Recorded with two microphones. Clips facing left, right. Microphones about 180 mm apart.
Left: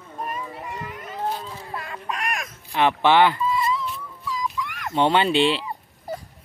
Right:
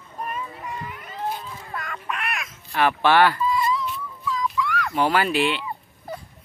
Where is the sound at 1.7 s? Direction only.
30° left (ahead or behind).